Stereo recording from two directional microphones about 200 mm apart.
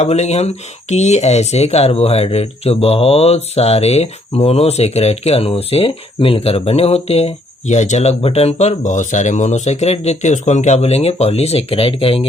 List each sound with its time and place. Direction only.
0.0 s speech: 35° left (ahead or behind)